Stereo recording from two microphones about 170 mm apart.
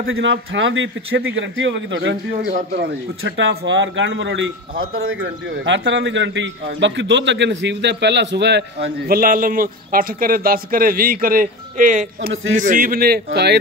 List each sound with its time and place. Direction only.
0.2 s a man's voice: 90° right; by 13.6 s 75° right (ahead or behind)